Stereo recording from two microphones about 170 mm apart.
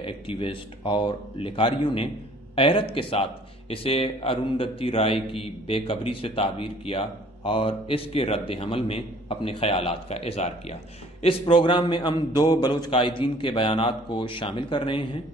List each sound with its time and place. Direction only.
0.0 s a man's voice: 30° left (ahead or behind)